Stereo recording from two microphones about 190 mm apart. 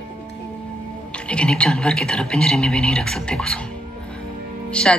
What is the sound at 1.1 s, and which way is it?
Speech, 5° left (ahead or behind).